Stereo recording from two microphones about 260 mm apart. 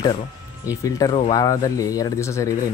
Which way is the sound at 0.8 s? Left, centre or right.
Centre.